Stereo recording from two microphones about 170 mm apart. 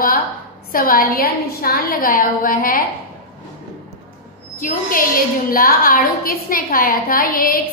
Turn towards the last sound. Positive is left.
turn(degrees=60)  # may be behind; listen again after turning